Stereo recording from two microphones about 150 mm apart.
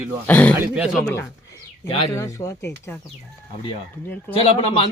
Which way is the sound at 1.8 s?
35° left (ahead or behind).